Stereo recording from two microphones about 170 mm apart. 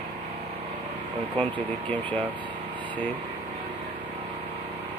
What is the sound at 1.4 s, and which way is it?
Speech, 10° left (ahead or behind).